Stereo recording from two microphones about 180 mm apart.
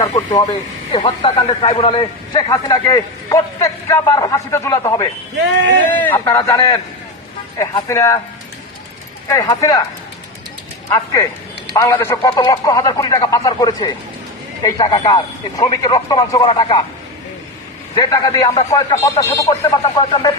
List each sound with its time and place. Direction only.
0.0 s a man's voice: 30° left (ahead or behind); by 6.2 s 10° left (ahead or behind)
6.2 s a man's voice: 25° left (ahead or behind)
9.3 s a man's voice: 20° left (ahead or behind)
11.7 s a man's voice: 15° left (ahead or behind)
17.9 s a man's voice: 20° left (ahead or behind)